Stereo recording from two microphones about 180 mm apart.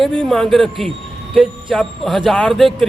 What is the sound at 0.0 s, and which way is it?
Speech, centre (ahead or behind).